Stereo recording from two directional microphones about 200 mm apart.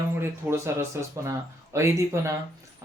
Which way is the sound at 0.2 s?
10° right (ahead or behind).